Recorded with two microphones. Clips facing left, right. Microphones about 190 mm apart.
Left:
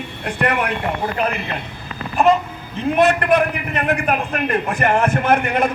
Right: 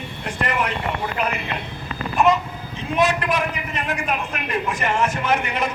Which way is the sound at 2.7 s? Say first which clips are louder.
Left 5 dB; 60° left (ahead or behind).